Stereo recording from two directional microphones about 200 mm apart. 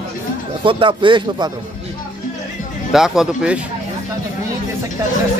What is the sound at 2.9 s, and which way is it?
Speech, centre (ahead or behind).